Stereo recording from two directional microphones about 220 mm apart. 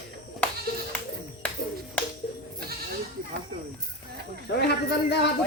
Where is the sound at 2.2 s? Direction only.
45° left (ahead or behind).